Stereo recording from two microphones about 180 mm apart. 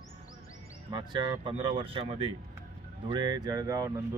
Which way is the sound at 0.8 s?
25° right (ahead or behind).